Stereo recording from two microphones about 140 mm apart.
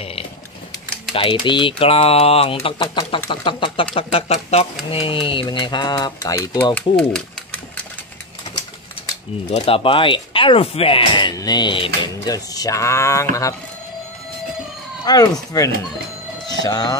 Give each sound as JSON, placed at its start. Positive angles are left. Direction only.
{"t": 1.1, "sound": "speech", "side_deg": 35}
{"t": 2.8, "sound": "speech", "side_deg": 30}
{"t": 6.6, "sound": "speech", "side_deg": 10}
{"t": 9.5, "sound": "speech", "side_deg": 40}
{"t": 12.5, "sound": "speech", "side_deg": 25}
{"t": 15.1, "sound": "speech", "side_deg": 30}